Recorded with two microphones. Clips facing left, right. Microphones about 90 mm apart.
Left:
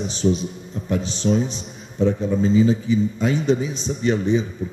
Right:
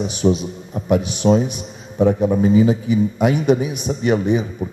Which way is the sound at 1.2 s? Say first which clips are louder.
Right 5 dB; 50° right (ahead or behind).